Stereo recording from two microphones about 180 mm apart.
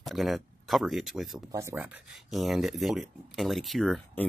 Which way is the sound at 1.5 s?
15° right (ahead or behind).